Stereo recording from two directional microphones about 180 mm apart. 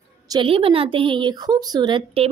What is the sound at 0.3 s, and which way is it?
A woman's voice, 30° right (ahead or behind).